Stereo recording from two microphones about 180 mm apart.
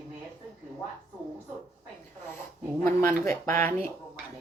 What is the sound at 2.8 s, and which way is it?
Speech, 15° left (ahead or behind).